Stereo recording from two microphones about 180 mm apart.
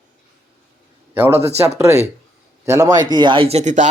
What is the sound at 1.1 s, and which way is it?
A man's voice, 10° right (ahead or behind).